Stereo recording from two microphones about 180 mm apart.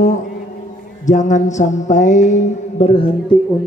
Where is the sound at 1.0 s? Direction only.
45° left (ahead or behind).